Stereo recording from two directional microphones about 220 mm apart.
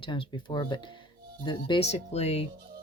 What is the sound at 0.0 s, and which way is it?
Speech, 20° left (ahead or behind).